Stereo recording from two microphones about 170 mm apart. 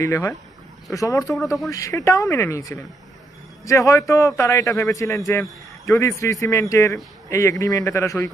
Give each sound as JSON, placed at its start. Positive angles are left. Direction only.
{"t": 0.0, "sound": "a man's voice", "side_deg": 15}